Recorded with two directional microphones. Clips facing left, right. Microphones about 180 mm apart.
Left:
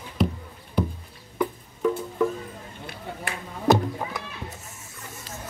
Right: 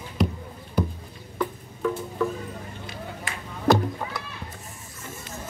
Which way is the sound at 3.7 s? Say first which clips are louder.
Even; 20° left (ahead or behind).